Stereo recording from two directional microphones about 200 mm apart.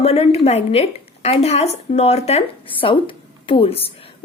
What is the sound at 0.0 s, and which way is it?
A woman's voice, 30° left (ahead or behind).